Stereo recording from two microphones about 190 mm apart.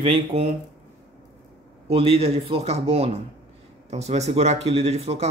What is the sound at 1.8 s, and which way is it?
Speech, 30° right (ahead or behind).